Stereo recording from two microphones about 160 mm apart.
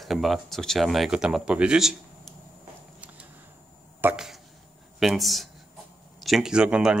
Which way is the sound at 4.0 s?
10° right (ahead or behind).